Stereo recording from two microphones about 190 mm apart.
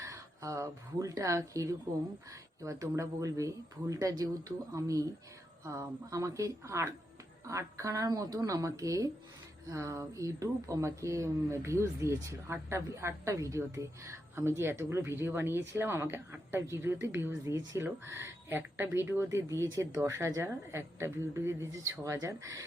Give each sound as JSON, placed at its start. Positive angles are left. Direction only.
{"t": 0.0, "sound": "speech", "side_deg": -15}